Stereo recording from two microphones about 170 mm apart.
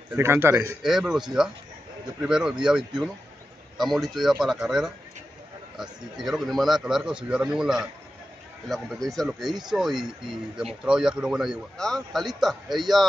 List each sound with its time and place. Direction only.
0.1 s a man's voice: 15° right (ahead or behind)
0.8 s a man's voice: centre (ahead or behind)
9.9 s speech: 25° right (ahead or behind)
10.9 s a man's voice: 5° right (ahead or behind)